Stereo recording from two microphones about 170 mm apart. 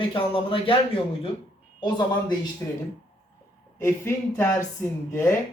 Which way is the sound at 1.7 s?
30° left (ahead or behind).